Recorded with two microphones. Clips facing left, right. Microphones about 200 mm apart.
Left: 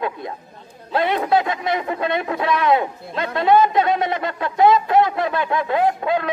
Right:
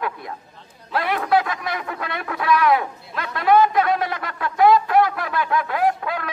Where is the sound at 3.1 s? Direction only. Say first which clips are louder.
Left 1 dB; 25° left (ahead or behind).